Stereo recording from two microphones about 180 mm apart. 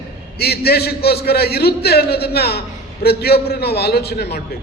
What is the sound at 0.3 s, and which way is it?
A man's voice, 60° left (ahead or behind).